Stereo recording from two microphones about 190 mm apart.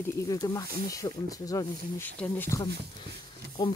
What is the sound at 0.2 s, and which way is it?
Speech, 20° left (ahead or behind).